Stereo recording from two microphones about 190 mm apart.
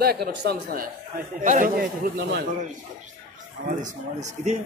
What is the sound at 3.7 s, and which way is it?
Speech, 40° right (ahead or behind).